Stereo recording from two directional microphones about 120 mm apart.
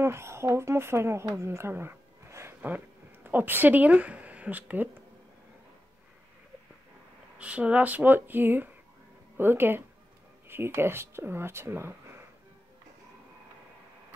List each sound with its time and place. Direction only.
0.0 s a woman's voice: 20° right (ahead or behind)
7.3 s speech: 10° right (ahead or behind)